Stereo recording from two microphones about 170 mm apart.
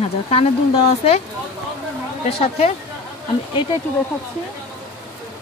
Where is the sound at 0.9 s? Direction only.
40° left (ahead or behind).